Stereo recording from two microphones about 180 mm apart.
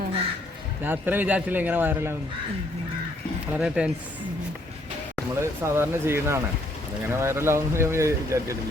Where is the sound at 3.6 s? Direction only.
5° right (ahead or behind).